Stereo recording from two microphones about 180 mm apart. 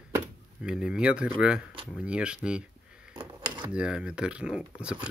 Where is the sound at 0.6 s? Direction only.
5° right (ahead or behind).